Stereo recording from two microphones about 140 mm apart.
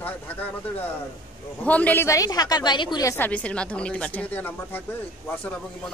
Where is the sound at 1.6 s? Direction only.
10° left (ahead or behind); by 3.1 s 30° left (ahead or behind).